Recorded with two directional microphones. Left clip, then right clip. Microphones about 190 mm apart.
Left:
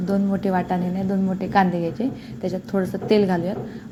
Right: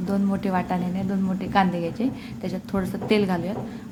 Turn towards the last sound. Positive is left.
turn(degrees=10)  # may be behind; listen again after turning